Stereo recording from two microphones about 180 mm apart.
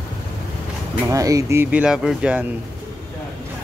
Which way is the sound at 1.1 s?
20° right (ahead or behind).